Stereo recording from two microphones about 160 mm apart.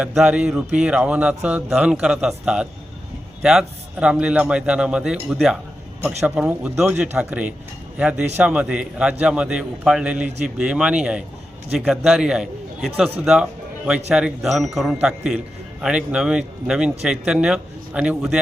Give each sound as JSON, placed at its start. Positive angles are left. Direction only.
{"t": 0.0, "sound": "speech", "side_deg": -5}